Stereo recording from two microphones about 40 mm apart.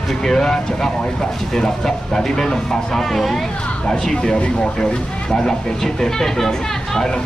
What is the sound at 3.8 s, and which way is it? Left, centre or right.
Speech, centre.